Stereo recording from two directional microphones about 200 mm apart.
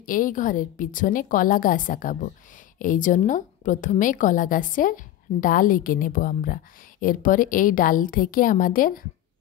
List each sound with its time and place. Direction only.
0.0 s a woman's voice: 40° left (ahead or behind)